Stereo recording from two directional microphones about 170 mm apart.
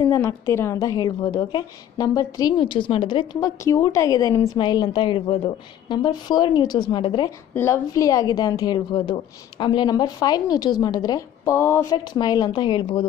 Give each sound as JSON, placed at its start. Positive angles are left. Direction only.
{"t": 0.0, "sound": "a woman's voice", "side_deg": 20}
{"t": 7.5, "sound": "a woman's voice", "side_deg": 15}